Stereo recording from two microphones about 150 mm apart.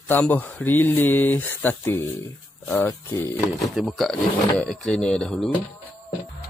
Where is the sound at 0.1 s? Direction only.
10° left (ahead or behind).